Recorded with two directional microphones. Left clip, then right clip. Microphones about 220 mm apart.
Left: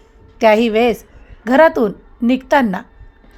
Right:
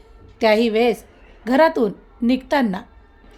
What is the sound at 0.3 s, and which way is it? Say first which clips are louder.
A woman's voice: left 4 dB; 15° left (ahead or behind).